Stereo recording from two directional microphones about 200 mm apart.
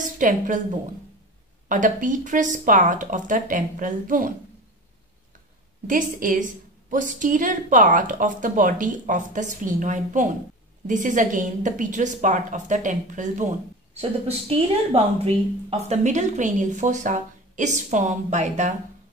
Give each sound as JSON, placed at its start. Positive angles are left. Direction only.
{"t": 0.0, "sound": "a woman's voice", "side_deg": -40}
{"t": 1.7, "sound": "a woman's voice", "side_deg": -40}
{"t": 5.9, "sound": "a woman's voice", "side_deg": -40}